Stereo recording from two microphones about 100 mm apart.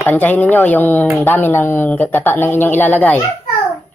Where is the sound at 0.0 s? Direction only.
15° left (ahead or behind).